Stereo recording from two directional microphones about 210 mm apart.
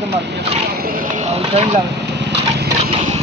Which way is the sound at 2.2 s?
55° right (ahead or behind).